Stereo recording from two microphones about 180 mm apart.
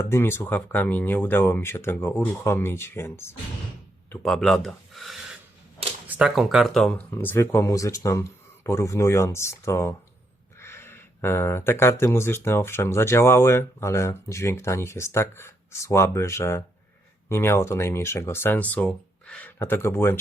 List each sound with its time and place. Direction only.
0.1 s speech: 15° left (ahead or behind)
4.1 s speech: centre (ahead or behind)